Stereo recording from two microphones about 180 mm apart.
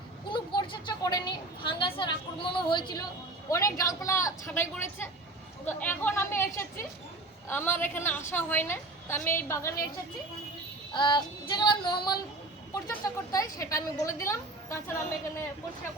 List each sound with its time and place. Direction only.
0.3 s a sound: 25° left (ahead or behind)
3.5 s a woman's voice: 20° left (ahead or behind)
10.9 s child singing: 25° left (ahead or behind)
12.7 s a woman's voice: 15° left (ahead or behind)